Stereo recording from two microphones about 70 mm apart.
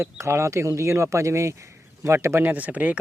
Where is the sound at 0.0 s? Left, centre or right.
Right.